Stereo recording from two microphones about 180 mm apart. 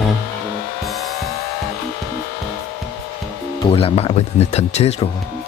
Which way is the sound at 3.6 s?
30° left (ahead or behind).